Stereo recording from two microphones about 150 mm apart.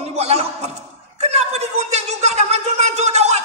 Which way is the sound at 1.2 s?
45° right (ahead or behind).